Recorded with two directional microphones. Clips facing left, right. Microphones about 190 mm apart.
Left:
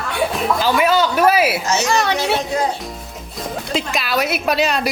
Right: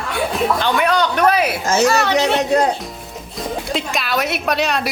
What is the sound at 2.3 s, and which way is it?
Music, 75° right (ahead or behind).